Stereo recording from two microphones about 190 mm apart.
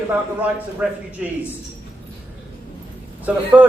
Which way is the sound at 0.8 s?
5° right (ahead or behind).